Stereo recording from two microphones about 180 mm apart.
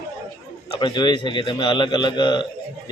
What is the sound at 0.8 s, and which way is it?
A man's voice, 25° left (ahead or behind).